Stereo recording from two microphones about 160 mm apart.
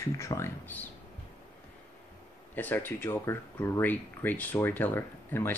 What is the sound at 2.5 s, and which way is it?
Speech, 10° left (ahead or behind).